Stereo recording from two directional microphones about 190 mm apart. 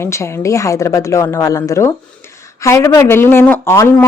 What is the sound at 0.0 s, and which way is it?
Speech, 15° left (ahead or behind).